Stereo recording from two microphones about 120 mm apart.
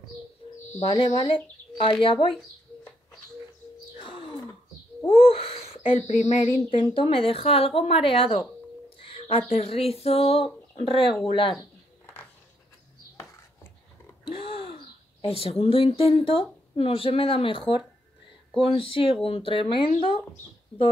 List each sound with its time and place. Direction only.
0.9 s speech: 45° left (ahead or behind)
5.0 s owl: 50° left (ahead or behind)
6.0 s a sound: 70° left (ahead or behind)
6.7 s speech: 50° left (ahead or behind)
9.5 s speech: 55° left (ahead or behind)
14.3 s gasp: 50° left (ahead or behind)
15.2 s speech: 55° left (ahead or behind)